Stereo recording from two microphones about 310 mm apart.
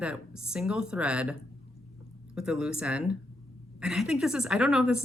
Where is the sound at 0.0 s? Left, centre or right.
Centre.